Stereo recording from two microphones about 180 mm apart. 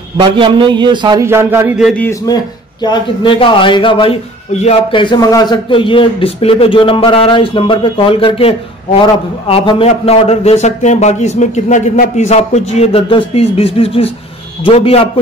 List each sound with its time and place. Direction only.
0.2 s a man's voice: 25° right (ahead or behind); by 1.9 s 10° right (ahead or behind)
2.0 s speech: 20° left (ahead or behind)